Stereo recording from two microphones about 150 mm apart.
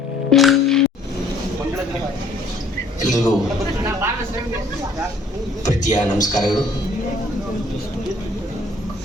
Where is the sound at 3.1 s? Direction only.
25° left (ahead or behind).